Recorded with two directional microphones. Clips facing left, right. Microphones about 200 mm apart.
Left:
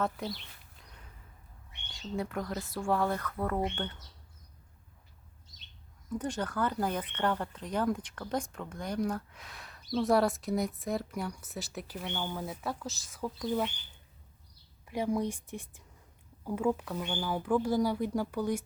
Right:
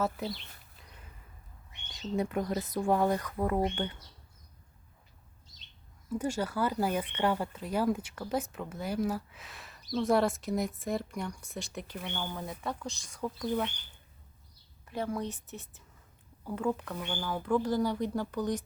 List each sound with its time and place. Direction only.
0.0 s speech: 5° right (ahead or behind)
0.8 s whip: 5° right (ahead or behind)
1.9 s speech: 20° right (ahead or behind)
6.1 s speech: 10° right (ahead or behind)
14.8 s speech: 15° left (ahead or behind)